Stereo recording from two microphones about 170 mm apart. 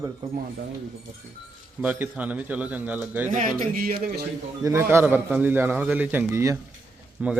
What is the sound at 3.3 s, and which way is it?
Speech, 50° right (ahead or behind).